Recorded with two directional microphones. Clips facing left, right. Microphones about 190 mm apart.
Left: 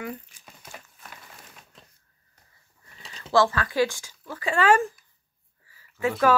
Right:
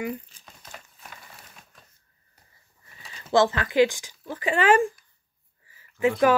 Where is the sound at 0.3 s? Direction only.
10° left (ahead or behind).